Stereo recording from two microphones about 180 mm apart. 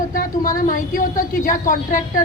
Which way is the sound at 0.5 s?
50° left (ahead or behind).